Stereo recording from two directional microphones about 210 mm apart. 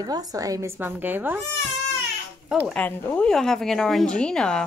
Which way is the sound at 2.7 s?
5° left (ahead or behind).